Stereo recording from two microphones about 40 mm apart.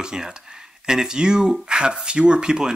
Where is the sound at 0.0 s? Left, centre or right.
Centre.